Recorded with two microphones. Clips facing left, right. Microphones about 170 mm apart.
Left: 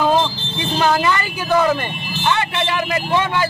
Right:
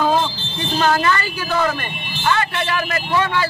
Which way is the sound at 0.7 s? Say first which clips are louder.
Even; 15° left (ahead or behind).